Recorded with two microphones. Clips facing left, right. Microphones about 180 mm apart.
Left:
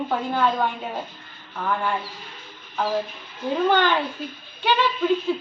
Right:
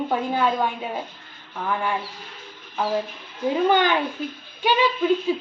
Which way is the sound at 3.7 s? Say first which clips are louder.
Right 1 dB; 15° right (ahead or behind).